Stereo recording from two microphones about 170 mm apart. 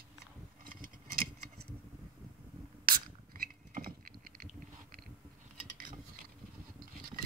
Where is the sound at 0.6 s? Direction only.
55° right (ahead or behind).